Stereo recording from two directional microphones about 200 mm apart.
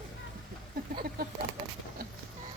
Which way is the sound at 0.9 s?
45° right (ahead or behind).